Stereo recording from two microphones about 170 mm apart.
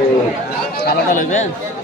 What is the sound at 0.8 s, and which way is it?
Speech, 60° left (ahead or behind).